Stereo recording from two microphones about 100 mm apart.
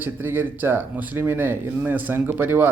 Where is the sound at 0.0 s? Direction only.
20° right (ahead or behind).